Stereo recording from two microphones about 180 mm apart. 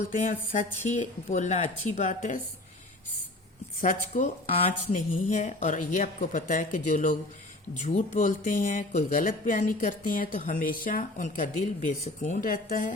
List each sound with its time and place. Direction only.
0.3 s speech: 45° left (ahead or behind)
3.8 s speech: 45° left (ahead or behind)
4.4 s speech: 35° left (ahead or behind); by 12.9 s 50° left (ahead or behind)